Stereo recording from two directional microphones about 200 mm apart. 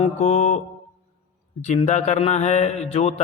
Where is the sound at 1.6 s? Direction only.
35° left (ahead or behind).